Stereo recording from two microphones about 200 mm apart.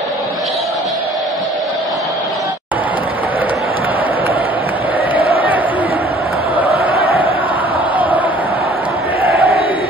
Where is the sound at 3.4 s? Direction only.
10° right (ahead or behind).